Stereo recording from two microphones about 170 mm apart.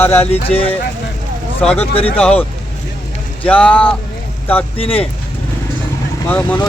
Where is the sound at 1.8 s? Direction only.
35° left (ahead or behind).